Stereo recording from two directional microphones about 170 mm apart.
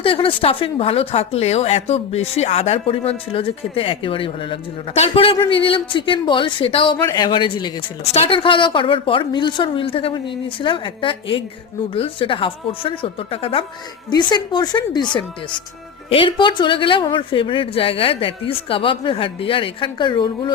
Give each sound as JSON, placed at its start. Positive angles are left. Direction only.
{"t": 0.0, "sound": "speech", "side_deg": 30}
{"t": 7.0, "sound": "a woman's voice", "side_deg": 20}